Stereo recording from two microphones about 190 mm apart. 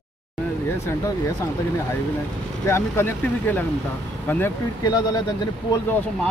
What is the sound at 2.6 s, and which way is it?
Speech, 15° left (ahead or behind).